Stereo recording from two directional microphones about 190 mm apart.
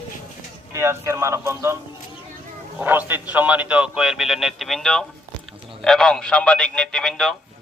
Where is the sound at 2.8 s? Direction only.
10° right (ahead or behind).